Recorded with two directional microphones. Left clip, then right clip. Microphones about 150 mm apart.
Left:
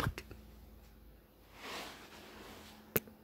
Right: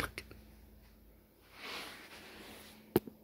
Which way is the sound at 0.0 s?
Centre (ahead or behind).